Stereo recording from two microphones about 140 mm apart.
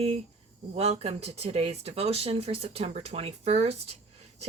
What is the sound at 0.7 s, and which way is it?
A woman's voice, 50° right (ahead or behind).